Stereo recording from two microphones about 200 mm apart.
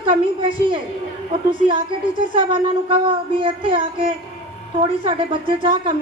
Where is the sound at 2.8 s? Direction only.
25° right (ahead or behind).